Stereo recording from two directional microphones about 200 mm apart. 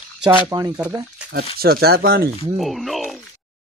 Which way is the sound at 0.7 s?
5° right (ahead or behind).